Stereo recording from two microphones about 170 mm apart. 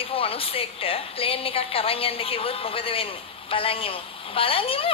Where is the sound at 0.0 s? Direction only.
35° left (ahead or behind).